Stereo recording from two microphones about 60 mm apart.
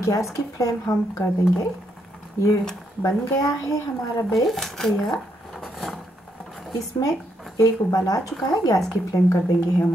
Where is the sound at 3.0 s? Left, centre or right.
Left.